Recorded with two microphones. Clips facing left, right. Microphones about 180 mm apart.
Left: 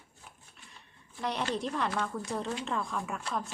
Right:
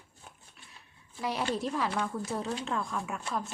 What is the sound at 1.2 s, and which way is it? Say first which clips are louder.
Speech: right 1 dB; 5° right (ahead or behind).